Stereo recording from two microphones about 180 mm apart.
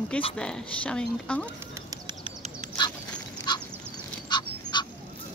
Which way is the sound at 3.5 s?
25° left (ahead or behind).